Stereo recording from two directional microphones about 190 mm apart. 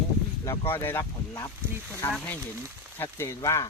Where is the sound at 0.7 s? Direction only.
10° left (ahead or behind).